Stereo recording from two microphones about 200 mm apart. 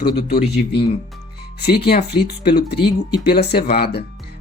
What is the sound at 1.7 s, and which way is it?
Speech, 50° left (ahead or behind).